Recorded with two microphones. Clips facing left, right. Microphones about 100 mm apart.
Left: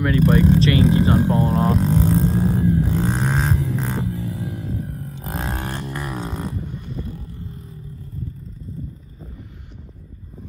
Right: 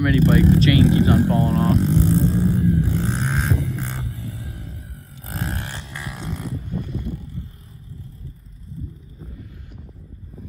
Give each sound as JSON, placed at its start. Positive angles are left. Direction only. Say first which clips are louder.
{"t": 0.0, "sound": "speech", "louder": "even", "side_deg": 30}
{"t": 1.8, "sound": "vehicle", "louder": "even", "side_deg": 90}
{"t": 5.6, "sound": "a sound", "louder": "left 5 dB", "side_deg": 35}
{"t": 6.4, "sound": "vehicle", "louder": "left 2 dB", "side_deg": 90}